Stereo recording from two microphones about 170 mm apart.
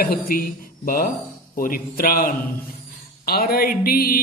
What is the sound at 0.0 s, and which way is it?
Speech, 60° left (ahead or behind).